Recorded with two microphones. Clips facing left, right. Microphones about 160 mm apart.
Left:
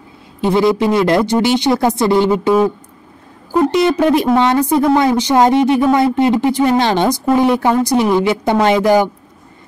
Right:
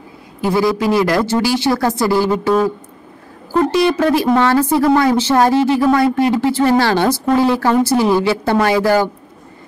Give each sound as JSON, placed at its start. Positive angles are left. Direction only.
{"t": 0.4, "sound": "speech", "side_deg": 20}
{"t": 3.5, "sound": "speech", "side_deg": 20}